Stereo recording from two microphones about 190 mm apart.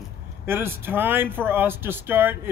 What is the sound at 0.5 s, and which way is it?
A man's voice, 10° right (ahead or behind).